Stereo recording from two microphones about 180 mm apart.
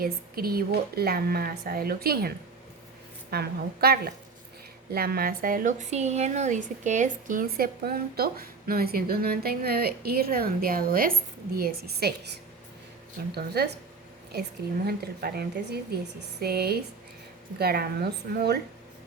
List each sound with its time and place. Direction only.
0.0 s a woman's voice: 55° right (ahead or behind)
14.8 s a woman's voice: 60° right (ahead or behind)